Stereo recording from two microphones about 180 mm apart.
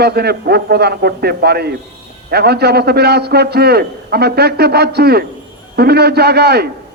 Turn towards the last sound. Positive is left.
turn(degrees=-60)  # may be behind; listen again after turning